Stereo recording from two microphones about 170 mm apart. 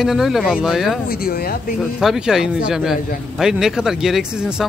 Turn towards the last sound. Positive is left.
turn(degrees=-5)  # may be behind; listen again after turning